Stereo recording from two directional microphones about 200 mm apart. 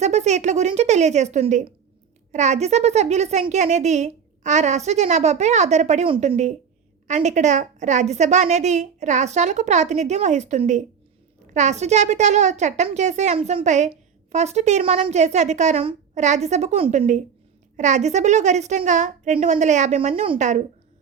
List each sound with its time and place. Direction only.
0.0 s a woman's voice: 35° right (ahead or behind)